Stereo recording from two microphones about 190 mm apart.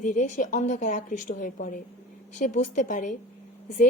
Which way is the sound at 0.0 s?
40° left (ahead or behind).